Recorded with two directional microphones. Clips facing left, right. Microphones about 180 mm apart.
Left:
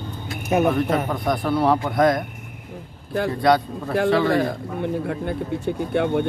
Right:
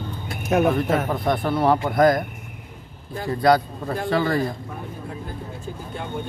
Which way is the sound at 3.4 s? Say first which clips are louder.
Right 2 dB; centre (ahead or behind).